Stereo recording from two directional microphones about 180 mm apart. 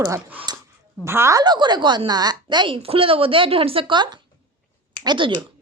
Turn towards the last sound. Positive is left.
turn(degrees=-25)  # may be behind; listen again after turning